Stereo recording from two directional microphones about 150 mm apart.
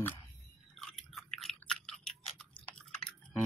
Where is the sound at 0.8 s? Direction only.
Centre (ahead or behind).